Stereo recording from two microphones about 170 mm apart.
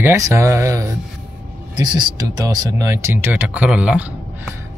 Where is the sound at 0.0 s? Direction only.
15° right (ahead or behind).